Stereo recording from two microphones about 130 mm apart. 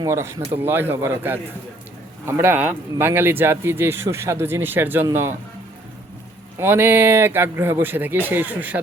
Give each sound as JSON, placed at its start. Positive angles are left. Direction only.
{"t": 0.0, "sound": "speech", "side_deg": -20}
{"t": 6.6, "sound": "speech", "side_deg": -15}